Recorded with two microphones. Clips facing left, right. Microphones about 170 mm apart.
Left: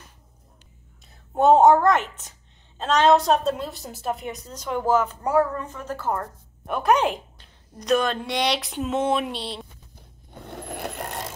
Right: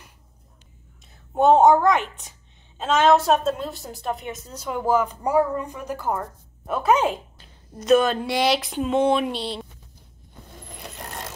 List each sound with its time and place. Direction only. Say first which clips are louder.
1.3 s a woman's voice: even; centre (ahead or behind)
10.4 s zipper: left 9 dB; 70° left (ahead or behind)